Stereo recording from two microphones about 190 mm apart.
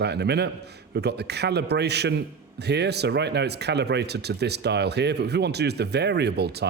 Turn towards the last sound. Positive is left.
turn(degrees=-60)  # may be behind; listen again after turning